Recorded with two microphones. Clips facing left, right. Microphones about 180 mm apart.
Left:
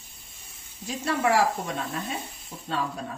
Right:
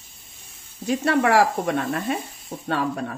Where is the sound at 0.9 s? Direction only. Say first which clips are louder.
Right 5 dB; 65° right (ahead or behind).